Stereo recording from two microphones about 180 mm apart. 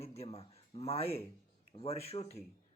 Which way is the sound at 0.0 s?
35° left (ahead or behind).